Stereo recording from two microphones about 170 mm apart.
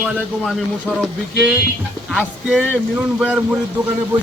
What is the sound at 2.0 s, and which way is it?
Music, 5° left (ahead or behind).